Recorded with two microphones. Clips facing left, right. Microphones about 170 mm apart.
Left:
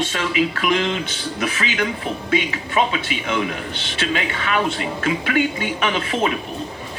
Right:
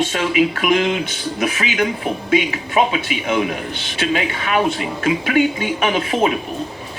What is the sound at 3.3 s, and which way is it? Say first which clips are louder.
Speech: right 4 dB; 45° right (ahead or behind).